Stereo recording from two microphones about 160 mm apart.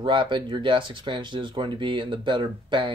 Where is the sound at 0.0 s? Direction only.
30° right (ahead or behind).